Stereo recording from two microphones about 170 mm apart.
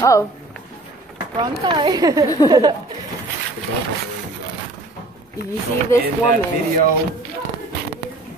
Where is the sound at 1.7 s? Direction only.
25° right (ahead or behind).